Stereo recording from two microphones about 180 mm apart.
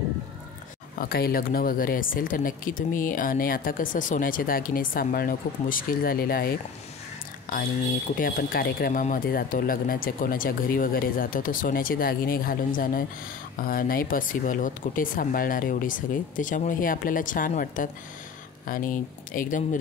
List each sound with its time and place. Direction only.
0.9 s speech: 55° left (ahead or behind)
8.2 s speech: 50° left (ahead or behind)